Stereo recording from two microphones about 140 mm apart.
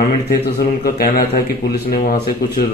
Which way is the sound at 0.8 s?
90° left.